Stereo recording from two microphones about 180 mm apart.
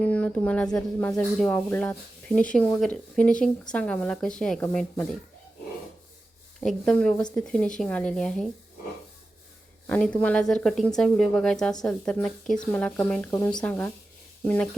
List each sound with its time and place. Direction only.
0.0 s speech: 5° left (ahead or behind)
6.6 s speech: 5° left (ahead or behind)
9.8 s speech: 5° left (ahead or behind)
13.3 s speech: 20° left (ahead or behind)